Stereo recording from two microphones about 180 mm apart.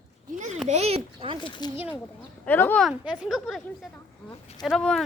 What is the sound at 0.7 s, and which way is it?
Speech, 35° right (ahead or behind).